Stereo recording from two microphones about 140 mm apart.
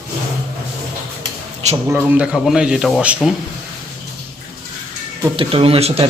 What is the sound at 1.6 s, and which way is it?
Speech, 55° right (ahead or behind).